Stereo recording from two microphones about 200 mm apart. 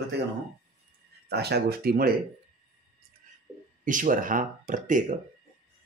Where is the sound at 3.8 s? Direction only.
40° right (ahead or behind).